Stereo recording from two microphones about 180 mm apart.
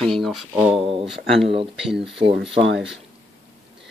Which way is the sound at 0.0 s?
Centre (ahead or behind).